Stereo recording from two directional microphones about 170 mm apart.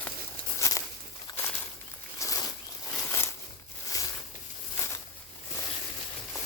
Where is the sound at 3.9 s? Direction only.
20° left (ahead or behind).